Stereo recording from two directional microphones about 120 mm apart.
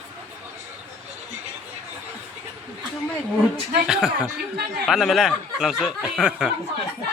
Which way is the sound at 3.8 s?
5° right (ahead or behind).